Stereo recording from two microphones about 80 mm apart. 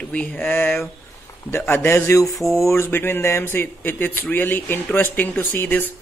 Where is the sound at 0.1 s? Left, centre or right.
Centre; by 2.3 s left.